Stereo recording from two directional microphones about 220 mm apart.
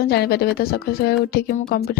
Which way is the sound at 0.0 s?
45° left (ahead or behind).